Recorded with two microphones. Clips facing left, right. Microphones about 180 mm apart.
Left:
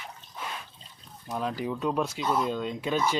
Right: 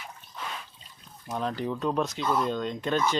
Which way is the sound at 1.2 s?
5° left (ahead or behind).